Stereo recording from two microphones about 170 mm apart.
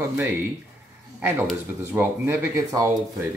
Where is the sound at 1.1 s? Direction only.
15° right (ahead or behind).